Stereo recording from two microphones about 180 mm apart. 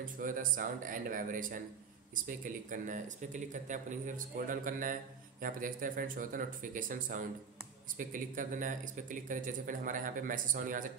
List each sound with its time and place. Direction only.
0.0 s speech: 50° right (ahead or behind)